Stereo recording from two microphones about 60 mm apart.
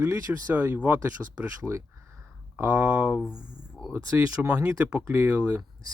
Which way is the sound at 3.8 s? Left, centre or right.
Centre.